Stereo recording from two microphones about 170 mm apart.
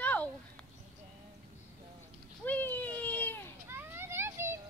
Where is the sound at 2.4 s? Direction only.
10° left (ahead or behind).